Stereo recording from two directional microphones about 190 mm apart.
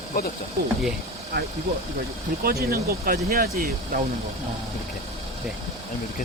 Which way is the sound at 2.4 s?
55° right (ahead or behind).